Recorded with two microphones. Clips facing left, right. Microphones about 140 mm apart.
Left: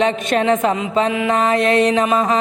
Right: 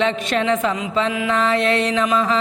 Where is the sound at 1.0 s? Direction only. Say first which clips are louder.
Left 3 dB; 25° left (ahead or behind).